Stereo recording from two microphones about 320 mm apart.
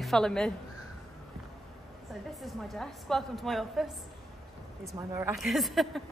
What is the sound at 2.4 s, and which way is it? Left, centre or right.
Speech, centre.